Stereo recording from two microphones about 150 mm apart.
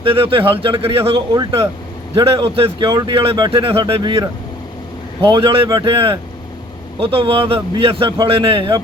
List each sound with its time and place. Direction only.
0.0 s a man's voice: 35° right (ahead or behind)
1.3 s speech: 25° right (ahead or behind)
2.1 s a man's voice: 40° right (ahead or behind)
2.9 s a man's voice: 25° right (ahead or behind)